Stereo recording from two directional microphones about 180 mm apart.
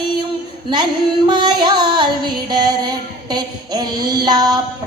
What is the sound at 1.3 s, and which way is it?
Music, 25° right (ahead or behind).